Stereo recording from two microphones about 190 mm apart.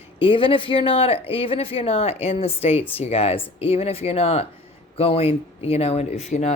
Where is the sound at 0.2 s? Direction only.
30° left (ahead or behind).